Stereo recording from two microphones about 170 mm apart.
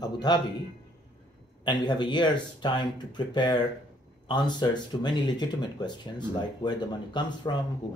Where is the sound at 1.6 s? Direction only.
25° left (ahead or behind).